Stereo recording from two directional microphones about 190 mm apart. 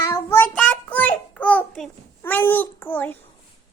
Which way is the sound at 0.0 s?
15° left (ahead or behind).